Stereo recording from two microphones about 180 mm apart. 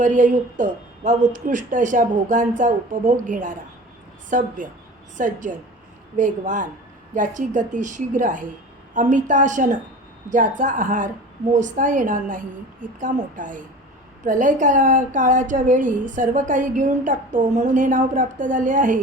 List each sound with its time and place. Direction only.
0.0 s a woman's voice: 45° right (ahead or behind)